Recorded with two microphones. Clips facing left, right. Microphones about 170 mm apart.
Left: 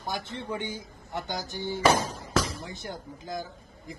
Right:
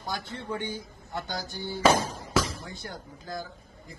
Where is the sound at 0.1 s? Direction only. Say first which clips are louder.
Even; 20° left (ahead or behind).